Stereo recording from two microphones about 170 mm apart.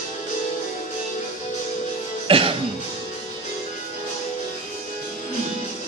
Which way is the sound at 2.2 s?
30° right (ahead or behind).